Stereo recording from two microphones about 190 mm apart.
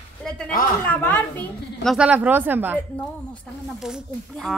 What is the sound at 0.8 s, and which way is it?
A woman's voice, 10° left (ahead or behind).